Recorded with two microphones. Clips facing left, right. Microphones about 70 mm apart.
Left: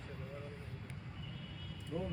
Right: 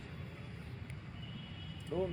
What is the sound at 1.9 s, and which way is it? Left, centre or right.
Speech, right.